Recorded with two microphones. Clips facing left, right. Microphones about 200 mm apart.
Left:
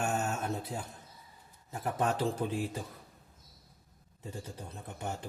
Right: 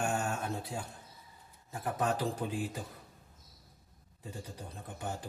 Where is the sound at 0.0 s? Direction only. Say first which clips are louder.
Left 1 dB; 20° left (ahead or behind).